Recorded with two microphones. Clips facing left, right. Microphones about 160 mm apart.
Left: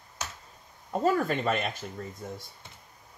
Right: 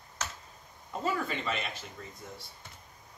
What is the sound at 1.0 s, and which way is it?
Speech, 50° left (ahead or behind).